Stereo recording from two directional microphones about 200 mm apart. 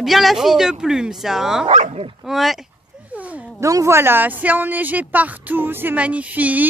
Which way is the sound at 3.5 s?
15° right (ahead or behind).